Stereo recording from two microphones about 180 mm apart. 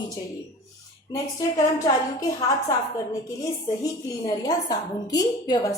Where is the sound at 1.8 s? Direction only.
20° left (ahead or behind).